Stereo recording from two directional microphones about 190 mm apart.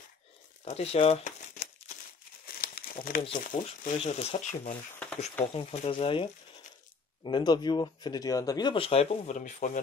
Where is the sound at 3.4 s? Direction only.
45° left (ahead or behind).